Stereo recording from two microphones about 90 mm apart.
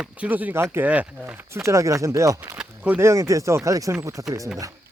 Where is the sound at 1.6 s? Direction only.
35° right (ahead or behind).